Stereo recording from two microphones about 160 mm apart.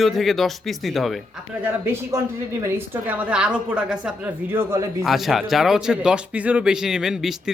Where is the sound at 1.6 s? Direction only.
15° right (ahead or behind).